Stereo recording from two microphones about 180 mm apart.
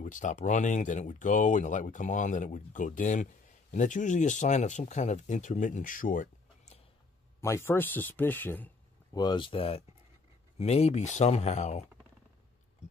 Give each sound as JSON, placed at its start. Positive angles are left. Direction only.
{"t": 0.0, "sound": "speech", "side_deg": 45}
{"t": 7.3, "sound": "speech", "side_deg": 15}
{"t": 9.1, "sound": "speech", "side_deg": 25}